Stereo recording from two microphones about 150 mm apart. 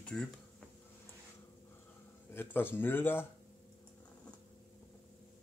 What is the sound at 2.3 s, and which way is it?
Speech, 15° left (ahead or behind).